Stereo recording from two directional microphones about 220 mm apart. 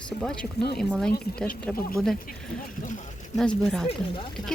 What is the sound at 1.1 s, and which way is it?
Speech, 45° left (ahead or behind).